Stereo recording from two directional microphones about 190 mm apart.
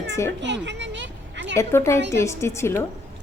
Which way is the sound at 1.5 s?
15° left (ahead or behind).